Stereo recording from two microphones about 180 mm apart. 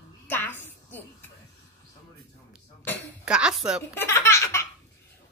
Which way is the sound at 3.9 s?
15° left (ahead or behind).